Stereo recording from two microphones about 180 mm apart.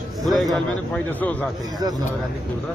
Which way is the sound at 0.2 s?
Centre (ahead or behind).